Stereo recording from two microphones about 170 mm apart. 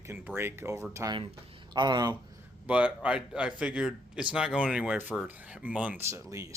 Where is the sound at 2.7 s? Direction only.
5° right (ahead or behind).